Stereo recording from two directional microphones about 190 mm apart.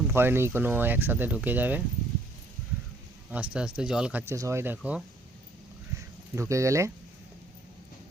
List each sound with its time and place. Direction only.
0.1 s speech: 10° right (ahead or behind)
3.3 s speech: 5° right (ahead or behind)
6.3 s speech: 15° right (ahead or behind)